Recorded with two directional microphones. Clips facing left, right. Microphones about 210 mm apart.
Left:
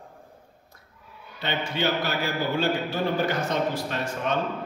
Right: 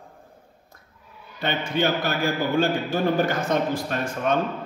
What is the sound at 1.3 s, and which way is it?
A man's voice, 50° right (ahead or behind).